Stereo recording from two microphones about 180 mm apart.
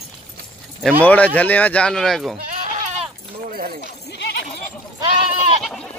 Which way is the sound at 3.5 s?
50° right (ahead or behind).